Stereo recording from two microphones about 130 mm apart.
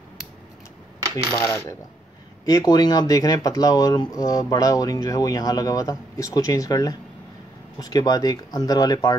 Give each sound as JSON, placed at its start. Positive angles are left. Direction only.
{"t": 1.4, "sound": "speech", "side_deg": 25}